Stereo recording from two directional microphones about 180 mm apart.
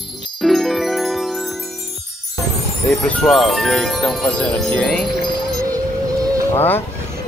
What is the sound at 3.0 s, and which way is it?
Speech, 5° left (ahead or behind).